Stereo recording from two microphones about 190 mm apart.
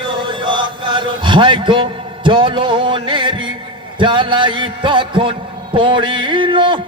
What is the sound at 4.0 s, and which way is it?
A man's voice, 25° right (ahead or behind).